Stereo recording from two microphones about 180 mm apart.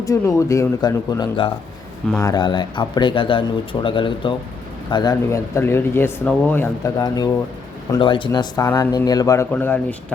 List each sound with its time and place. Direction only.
0.0 s speech: 20° left (ahead or behind)